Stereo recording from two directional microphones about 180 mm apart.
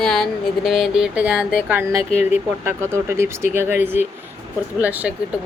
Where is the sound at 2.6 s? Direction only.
15° right (ahead or behind).